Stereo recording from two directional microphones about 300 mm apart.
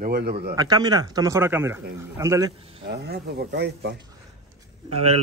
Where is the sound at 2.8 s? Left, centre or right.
Right.